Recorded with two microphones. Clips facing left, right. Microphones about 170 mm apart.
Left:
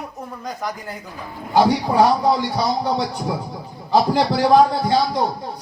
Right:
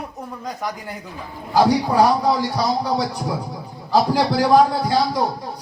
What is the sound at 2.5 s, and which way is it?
Speech, 25° left (ahead or behind).